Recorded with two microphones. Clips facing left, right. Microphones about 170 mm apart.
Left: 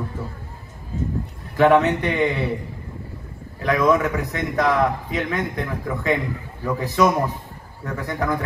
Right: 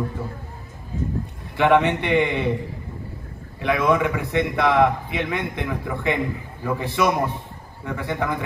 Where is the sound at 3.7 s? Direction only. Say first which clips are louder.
Left 2 dB; 40° left (ahead or behind).